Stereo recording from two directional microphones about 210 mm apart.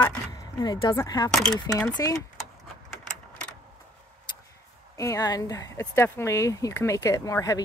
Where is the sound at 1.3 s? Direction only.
Centre (ahead or behind).